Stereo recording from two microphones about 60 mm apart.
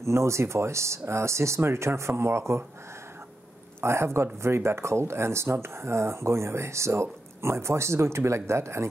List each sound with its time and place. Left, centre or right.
0.0 s speech: right
3.8 s speech: right